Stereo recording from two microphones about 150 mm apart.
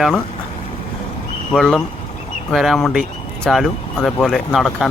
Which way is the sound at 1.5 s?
5° left (ahead or behind).